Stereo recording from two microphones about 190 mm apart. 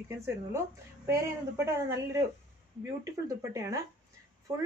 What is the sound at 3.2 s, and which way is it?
Speech, 15° right (ahead or behind).